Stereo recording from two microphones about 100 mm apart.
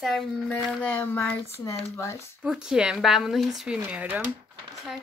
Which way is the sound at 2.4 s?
5° right (ahead or behind).